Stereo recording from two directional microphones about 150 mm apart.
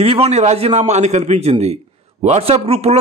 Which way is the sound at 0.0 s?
40° right (ahead or behind).